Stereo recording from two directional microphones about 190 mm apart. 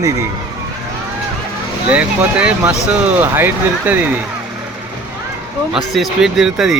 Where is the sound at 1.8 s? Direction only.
5° right (ahead or behind).